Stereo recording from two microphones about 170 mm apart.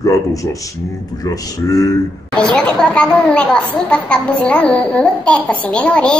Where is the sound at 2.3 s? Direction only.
5° left (ahead or behind).